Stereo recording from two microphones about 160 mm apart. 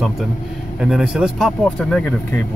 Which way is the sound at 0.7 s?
5° right (ahead or behind).